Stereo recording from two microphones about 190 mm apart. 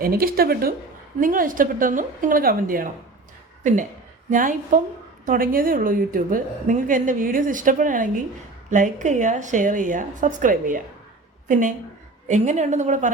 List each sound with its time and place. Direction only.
0.0 s a woman's voice: 50° right (ahead or behind)
4.3 s a woman's voice: 45° right (ahead or behind)
12.3 s a woman's voice: 40° right (ahead or behind)